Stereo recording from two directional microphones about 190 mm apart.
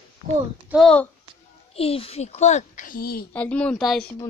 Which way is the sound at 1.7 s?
30° left (ahead or behind).